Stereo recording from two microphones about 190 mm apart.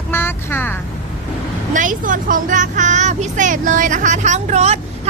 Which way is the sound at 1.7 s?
45° right (ahead or behind).